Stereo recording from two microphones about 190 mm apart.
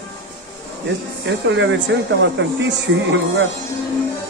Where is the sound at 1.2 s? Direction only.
75° right (ahead or behind).